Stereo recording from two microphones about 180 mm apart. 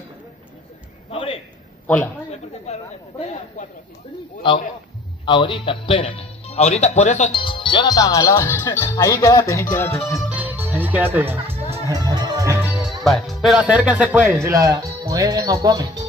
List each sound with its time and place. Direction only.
1.1 s a man's voice: 30° left (ahead or behind)
2.3 s chatter: 35° left (ahead or behind)
5.2 s a man's voice: 25° left (ahead or behind)
10.3 s music: 10° right (ahead or behind)
12.6 s music: centre (ahead or behind)
13.0 s speech: centre (ahead or behind); by 16.1 s 20° right (ahead or behind)